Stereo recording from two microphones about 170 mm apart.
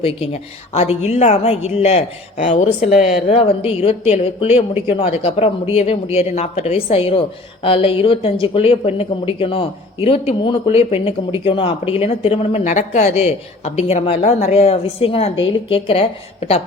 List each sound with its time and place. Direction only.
0.7 s a woman's voice: 40° left (ahead or behind)